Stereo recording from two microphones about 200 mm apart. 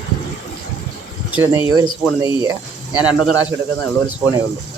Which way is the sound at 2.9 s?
5° right (ahead or behind).